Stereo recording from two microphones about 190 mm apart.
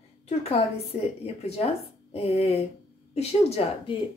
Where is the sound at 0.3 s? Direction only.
35° left (ahead or behind).